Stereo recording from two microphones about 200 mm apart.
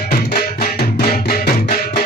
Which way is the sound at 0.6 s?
50° left (ahead or behind).